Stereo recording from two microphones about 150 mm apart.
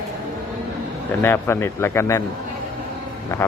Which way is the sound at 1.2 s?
15° left (ahead or behind).